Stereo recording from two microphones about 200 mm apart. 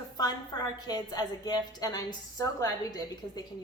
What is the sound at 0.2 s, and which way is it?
A woman's voice, 20° left (ahead or behind).